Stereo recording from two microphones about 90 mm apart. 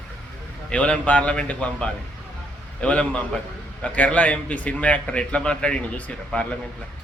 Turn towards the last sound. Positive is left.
turn(degrees=10)  # may be behind; listen again after turning